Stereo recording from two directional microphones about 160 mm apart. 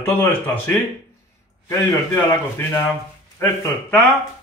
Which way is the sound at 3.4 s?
10° left (ahead or behind).